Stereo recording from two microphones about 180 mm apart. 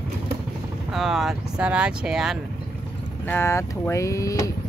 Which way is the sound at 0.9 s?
Centre (ahead or behind).